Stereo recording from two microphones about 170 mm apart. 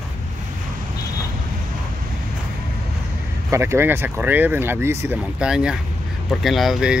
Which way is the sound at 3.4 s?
15° right (ahead or behind).